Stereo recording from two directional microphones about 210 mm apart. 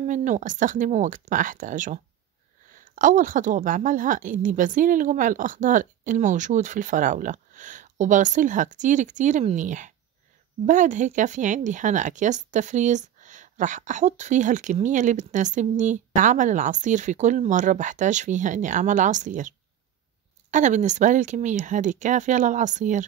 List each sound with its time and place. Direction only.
0.0 s speech: 35° right (ahead or behind)
20.5 s speech: 35° right (ahead or behind)